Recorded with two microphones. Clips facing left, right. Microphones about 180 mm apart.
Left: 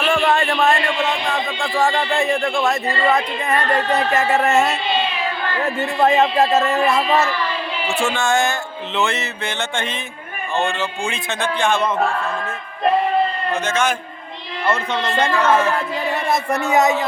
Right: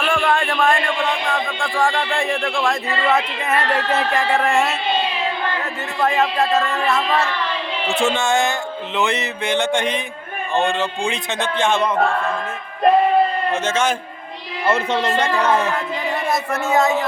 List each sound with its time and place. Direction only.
0.1 s a sound: 5° left (ahead or behind)
1.5 s speech: 5° left (ahead or behind)
6.0 s speech: 20° left (ahead or behind)
7.9 s a man's voice: 20° right (ahead or behind)
13.5 s speech: 30° right (ahead or behind)
15.3 s a man's voice: 15° right (ahead or behind)
16.5 s a man's voice: 15° left (ahead or behind)